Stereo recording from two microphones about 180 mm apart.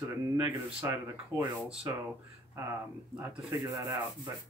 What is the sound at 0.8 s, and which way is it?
Speech, 15° right (ahead or behind).